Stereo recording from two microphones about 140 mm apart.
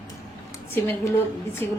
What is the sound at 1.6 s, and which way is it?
Speech, 15° left (ahead or behind).